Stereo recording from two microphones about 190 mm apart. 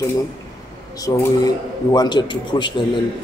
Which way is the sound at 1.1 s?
20° left (ahead or behind).